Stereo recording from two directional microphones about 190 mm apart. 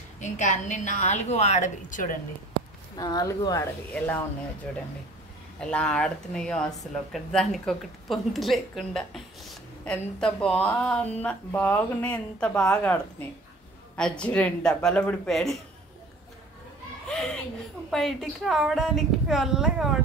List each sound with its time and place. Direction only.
0.2 s a woman's voice: 40° left (ahead or behind)
3.0 s a woman's voice: 20° left (ahead or behind); by 15.6 s centre (ahead or behind)
17.8 s a woman's voice: centre (ahead or behind)